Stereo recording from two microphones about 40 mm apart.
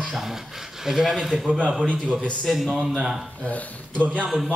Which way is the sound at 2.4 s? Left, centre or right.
Centre.